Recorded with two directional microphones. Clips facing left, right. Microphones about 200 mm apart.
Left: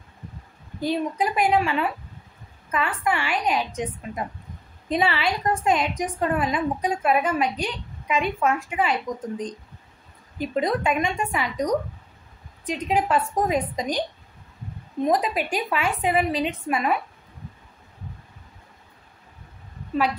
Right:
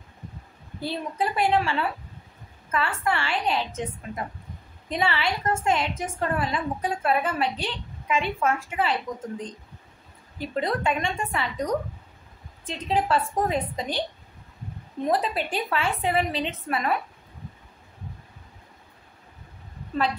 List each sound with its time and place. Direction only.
0.7 s a woman's voice: 15° left (ahead or behind)
10.4 s a woman's voice: 15° left (ahead or behind)
15.0 s a woman's voice: 15° left (ahead or behind)